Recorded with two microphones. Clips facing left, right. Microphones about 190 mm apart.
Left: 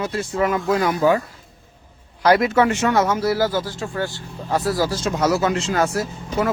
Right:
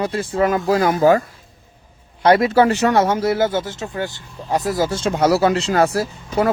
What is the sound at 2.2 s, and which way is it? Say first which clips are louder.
Speech: right 2 dB; 25° right (ahead or behind).